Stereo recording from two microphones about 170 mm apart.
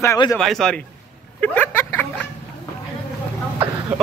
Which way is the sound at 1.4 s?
10° left (ahead or behind).